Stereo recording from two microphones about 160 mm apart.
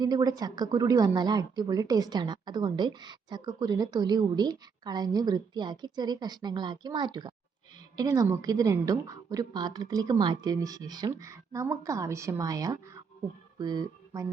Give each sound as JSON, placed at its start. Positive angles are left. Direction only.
{"t": 0.0, "sound": "a woman's voice", "side_deg": -25}